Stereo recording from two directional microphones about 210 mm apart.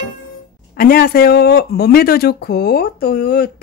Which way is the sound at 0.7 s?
45° left (ahead or behind).